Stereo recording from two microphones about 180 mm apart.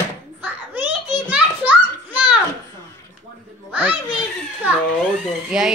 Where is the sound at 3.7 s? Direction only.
10° right (ahead or behind).